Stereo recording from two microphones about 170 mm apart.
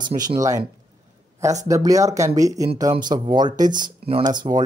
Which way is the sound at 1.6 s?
20° right (ahead or behind).